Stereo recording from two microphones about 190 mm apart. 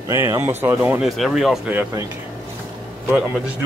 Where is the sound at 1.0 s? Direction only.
Centre (ahead or behind).